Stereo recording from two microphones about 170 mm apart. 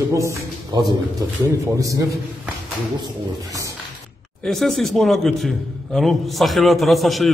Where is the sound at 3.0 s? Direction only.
20° right (ahead or behind).